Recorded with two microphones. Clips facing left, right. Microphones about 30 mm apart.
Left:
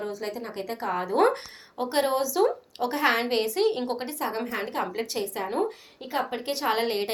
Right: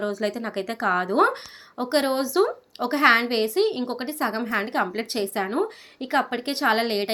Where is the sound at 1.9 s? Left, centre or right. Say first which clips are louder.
Right 2 dB; right.